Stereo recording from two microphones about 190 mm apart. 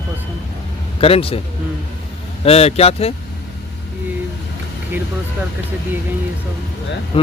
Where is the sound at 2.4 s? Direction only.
30° left (ahead or behind).